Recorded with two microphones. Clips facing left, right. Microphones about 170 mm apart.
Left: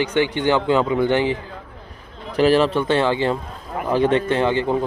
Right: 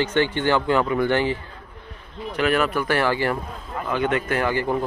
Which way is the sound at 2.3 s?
30° left (ahead or behind).